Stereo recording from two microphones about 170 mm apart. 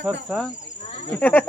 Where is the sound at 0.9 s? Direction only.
35° left (ahead or behind).